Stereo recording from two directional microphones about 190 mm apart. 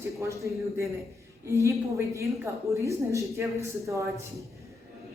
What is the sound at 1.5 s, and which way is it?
Speech, 15° right (ahead or behind).